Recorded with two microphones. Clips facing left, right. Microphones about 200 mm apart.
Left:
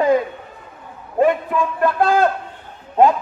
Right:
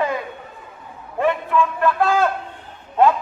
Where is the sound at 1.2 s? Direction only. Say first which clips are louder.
Left 2 dB; 40° left (ahead or behind).